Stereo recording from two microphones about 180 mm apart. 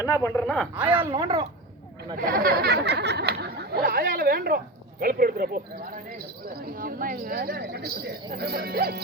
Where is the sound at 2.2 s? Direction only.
55° right (ahead or behind).